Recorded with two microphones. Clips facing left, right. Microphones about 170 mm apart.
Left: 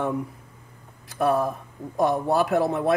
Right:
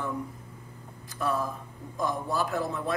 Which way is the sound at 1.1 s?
65° left (ahead or behind).